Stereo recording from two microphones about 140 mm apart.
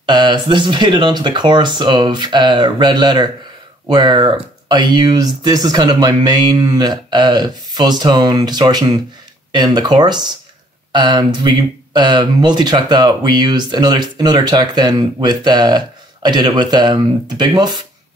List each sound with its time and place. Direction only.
0.0 s speech: 35° right (ahead or behind)